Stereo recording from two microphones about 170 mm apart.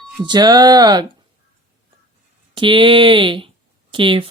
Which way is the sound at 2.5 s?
30° right (ahead or behind).